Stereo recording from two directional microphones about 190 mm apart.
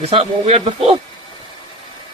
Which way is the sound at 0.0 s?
30° right (ahead or behind).